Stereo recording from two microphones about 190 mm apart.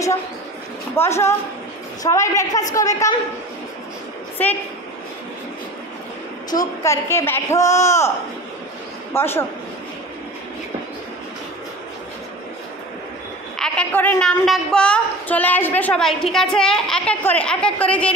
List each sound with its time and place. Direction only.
0.9 s speech: 15° left (ahead or behind)
4.4 s speech: 10° left (ahead or behind)
6.5 s speech: 15° left (ahead or behind)
9.1 s speech: 10° left (ahead or behind)
13.6 s a woman's voice: 5° left (ahead or behind)